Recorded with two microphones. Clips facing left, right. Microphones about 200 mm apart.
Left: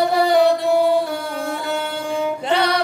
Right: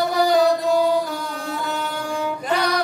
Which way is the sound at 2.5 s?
30° left (ahead or behind).